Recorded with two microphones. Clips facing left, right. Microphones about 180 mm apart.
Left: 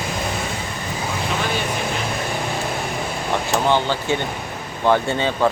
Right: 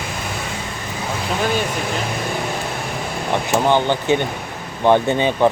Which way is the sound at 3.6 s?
15° right (ahead or behind).